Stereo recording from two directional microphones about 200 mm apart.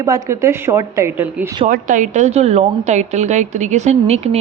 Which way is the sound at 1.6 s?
40° right (ahead or behind).